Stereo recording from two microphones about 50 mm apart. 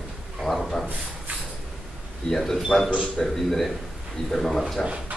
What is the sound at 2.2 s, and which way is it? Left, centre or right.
A man's voice, centre.